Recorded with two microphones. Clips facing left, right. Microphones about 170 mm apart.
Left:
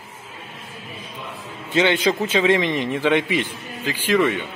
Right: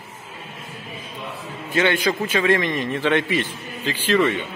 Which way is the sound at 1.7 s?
20° left (ahead or behind).